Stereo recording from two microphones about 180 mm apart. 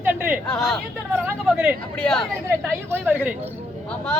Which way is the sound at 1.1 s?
10° right (ahead or behind).